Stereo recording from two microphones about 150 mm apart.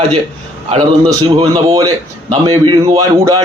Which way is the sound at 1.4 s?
25° right (ahead or behind).